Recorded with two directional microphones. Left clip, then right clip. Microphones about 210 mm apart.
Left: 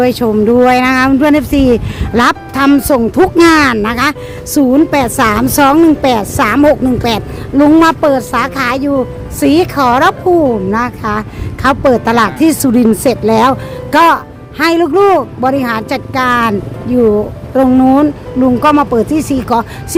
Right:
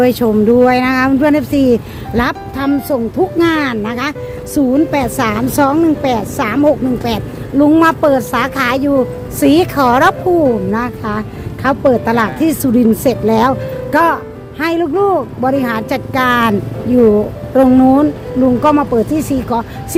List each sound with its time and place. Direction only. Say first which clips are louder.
0.0 s a woman's voice: left 1 dB; 5° left (ahead or behind)
10.4 s a woman's voice: left 2 dB; 15° left (ahead or behind)